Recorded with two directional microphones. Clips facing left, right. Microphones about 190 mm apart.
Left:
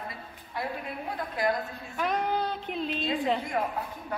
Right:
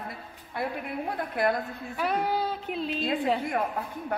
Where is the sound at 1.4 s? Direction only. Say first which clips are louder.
Right 2 dB; 60° right (ahead or behind).